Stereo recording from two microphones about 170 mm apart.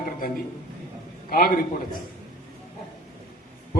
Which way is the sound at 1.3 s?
60° left (ahead or behind).